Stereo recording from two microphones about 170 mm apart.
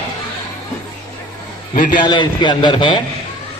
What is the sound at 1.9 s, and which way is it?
A man's voice, 25° left (ahead or behind).